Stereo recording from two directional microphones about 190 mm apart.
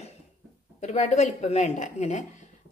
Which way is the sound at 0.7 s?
40° left (ahead or behind).